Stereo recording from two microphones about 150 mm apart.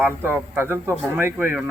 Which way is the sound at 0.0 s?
15° right (ahead or behind).